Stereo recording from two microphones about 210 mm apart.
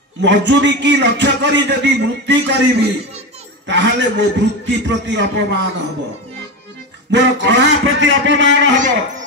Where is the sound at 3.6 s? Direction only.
55° right (ahead or behind).